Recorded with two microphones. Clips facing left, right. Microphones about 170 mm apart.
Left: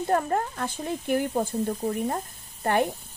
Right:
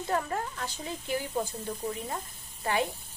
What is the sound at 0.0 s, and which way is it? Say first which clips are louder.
Speech: left 6 dB; 50° left (ahead or behind).